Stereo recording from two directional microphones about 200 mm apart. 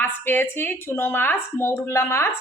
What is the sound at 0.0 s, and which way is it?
A woman's voice, 10° left (ahead or behind).